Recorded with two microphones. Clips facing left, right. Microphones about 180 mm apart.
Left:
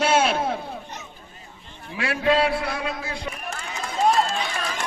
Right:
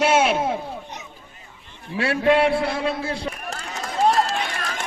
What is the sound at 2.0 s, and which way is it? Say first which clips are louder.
A man's voice: right 3 dB; 25° right (ahead or behind).